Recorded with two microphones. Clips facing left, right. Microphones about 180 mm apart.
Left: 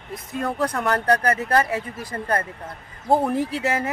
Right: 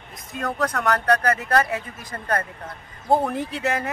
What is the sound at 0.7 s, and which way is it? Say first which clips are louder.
Speech: right 1 dB; 30° left (ahead or behind).